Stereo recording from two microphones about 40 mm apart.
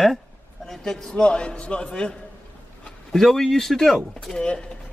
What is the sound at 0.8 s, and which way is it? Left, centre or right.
Speech, centre.